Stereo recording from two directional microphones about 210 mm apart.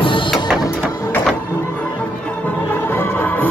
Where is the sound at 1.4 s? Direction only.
10° left (ahead or behind).